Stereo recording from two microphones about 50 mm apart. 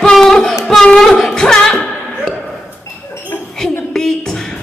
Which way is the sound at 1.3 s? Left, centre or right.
Centre.